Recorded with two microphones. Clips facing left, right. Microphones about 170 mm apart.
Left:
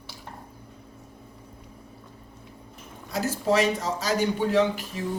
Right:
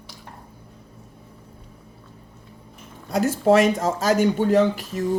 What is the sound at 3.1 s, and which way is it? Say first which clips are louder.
Speech: right 6 dB; 50° right (ahead or behind).